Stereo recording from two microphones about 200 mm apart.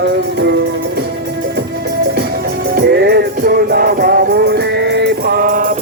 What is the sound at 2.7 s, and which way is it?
Music, 55° right (ahead or behind).